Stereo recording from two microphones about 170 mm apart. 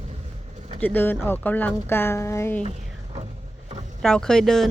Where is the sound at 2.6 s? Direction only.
40° right (ahead or behind).